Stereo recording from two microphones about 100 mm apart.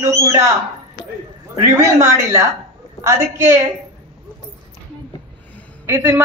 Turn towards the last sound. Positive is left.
turn(degrees=-30)  # may be behind; listen again after turning